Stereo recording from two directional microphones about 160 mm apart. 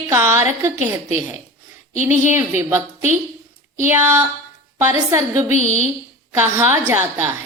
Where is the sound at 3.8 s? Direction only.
15° right (ahead or behind).